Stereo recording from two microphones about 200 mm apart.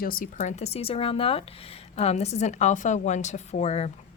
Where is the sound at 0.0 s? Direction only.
45° left (ahead or behind).